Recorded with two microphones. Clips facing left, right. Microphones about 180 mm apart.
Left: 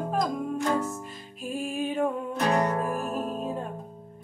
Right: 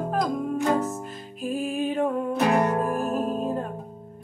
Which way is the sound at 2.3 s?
20° right (ahead or behind).